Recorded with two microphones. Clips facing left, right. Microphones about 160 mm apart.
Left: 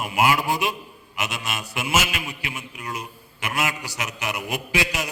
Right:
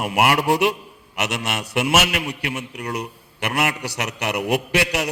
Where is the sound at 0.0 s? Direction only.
70° right (ahead or behind).